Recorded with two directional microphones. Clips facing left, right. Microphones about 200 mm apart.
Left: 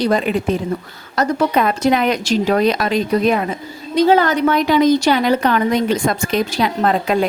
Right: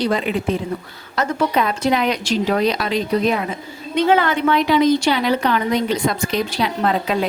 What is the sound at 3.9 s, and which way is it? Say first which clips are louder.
A woman's voice: left 3 dB; 35° left (ahead or behind).